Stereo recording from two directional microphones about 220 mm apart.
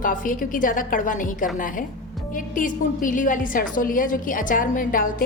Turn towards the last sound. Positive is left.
turn(degrees=40)  # may be behind; listen again after turning